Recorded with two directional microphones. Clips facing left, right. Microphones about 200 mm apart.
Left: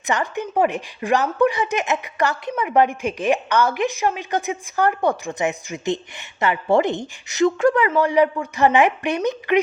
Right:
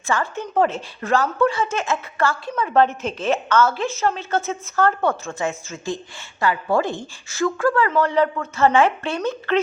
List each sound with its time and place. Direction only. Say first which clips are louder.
0.0 s speech: left 1 dB; 20° left (ahead or behind)